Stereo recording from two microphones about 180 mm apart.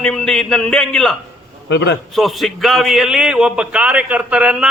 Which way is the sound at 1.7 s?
80° left.